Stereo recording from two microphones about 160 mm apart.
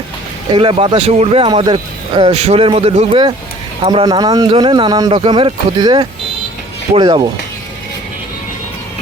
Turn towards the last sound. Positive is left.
turn(degrees=-25)  # may be behind; listen again after turning